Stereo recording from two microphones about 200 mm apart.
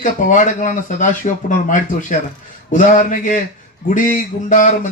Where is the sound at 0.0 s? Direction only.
40° left (ahead or behind).